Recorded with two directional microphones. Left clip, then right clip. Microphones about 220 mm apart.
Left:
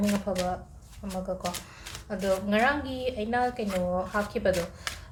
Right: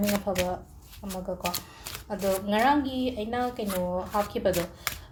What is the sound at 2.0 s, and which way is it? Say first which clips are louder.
Speech: even; 20° right (ahead or behind).